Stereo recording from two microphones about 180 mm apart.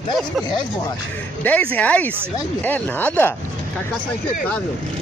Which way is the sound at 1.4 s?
10° left (ahead or behind).